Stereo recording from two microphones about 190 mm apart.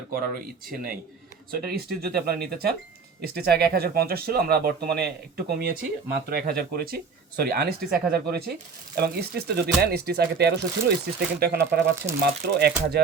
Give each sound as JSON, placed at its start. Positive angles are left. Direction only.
{"t": 1.5, "sound": "speech", "side_deg": -55}